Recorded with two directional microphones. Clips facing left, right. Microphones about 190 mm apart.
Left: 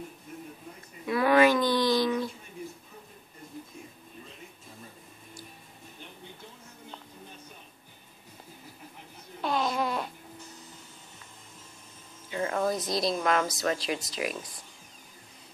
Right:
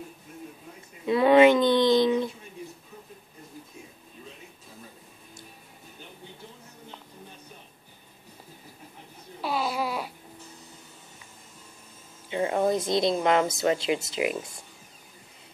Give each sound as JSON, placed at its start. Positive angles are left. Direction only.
{"t": 1.0, "sound": "speech", "side_deg": -25}
{"t": 9.4, "sound": "a sound", "side_deg": -5}
{"t": 12.3, "sound": "speech", "side_deg": -20}